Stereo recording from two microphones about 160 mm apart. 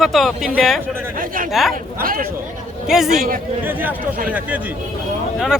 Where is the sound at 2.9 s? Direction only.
5° right (ahead or behind).